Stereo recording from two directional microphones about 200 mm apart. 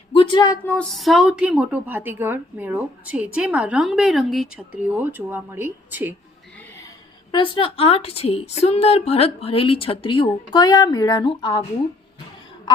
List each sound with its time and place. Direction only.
0.1 s a woman's voice: 25° left (ahead or behind); by 6.1 s 10° right (ahead or behind)
7.3 s a woman's voice: 25° left (ahead or behind)